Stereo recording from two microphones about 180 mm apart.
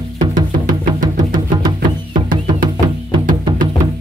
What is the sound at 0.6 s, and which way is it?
Music, 20° right (ahead or behind).